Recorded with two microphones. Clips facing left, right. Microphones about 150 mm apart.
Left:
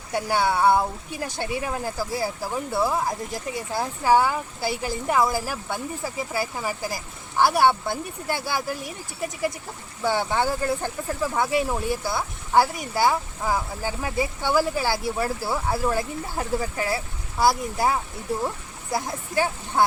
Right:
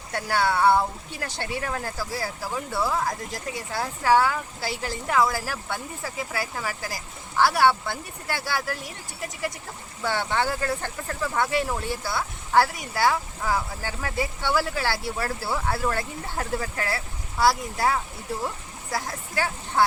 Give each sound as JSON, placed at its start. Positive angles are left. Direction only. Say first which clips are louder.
{"t": 0.1, "sound": "speech", "louder": "left 2 dB", "side_deg": 15}
{"t": 10.0, "sound": "speech", "louder": "left 2 dB", "side_deg": 15}